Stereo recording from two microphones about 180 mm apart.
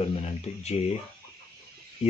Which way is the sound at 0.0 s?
35° left (ahead or behind).